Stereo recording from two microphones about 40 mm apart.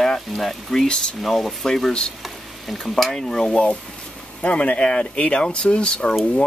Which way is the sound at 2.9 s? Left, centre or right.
Centre.